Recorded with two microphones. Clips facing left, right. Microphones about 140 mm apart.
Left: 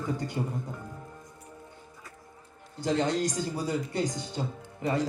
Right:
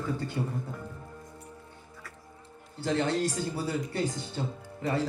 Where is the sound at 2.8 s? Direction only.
15° left (ahead or behind).